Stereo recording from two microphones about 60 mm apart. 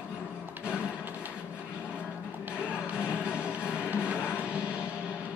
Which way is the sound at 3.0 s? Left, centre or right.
Centre.